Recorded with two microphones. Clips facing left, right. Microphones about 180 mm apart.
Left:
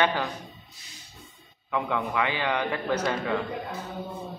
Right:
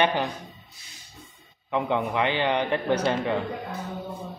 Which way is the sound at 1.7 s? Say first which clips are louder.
Right 3 dB; 25° right (ahead or behind).